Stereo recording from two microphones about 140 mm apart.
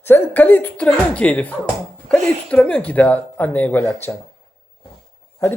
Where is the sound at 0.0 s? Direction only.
15° left (ahead or behind).